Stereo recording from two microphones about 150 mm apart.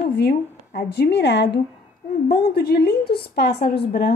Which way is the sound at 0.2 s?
90° left.